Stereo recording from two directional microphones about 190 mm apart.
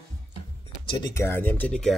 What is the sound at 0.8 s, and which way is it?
Speech, 25° left (ahead or behind).